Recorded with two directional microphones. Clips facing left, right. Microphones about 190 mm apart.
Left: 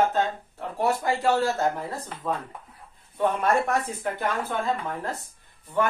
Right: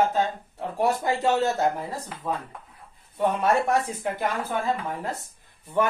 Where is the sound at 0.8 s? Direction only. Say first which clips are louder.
Right 1 dB; 20° right (ahead or behind).